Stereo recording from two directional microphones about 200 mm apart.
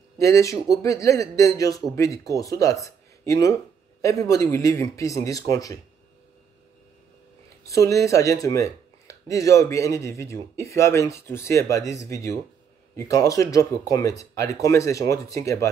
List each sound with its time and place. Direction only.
0.2 s speech: 15° left (ahead or behind)
7.6 s speech: 15° left (ahead or behind)